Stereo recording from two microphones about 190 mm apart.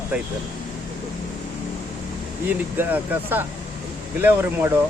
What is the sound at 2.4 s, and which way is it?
Speech, 10° right (ahead or behind).